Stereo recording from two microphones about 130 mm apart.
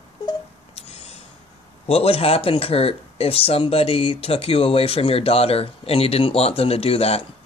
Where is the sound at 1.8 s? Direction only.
50° left (ahead or behind).